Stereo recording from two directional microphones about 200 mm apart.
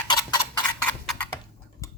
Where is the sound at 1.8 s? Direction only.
15° left (ahead or behind).